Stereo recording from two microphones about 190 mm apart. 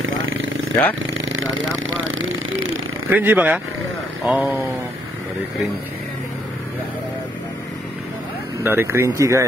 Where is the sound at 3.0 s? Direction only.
10° right (ahead or behind).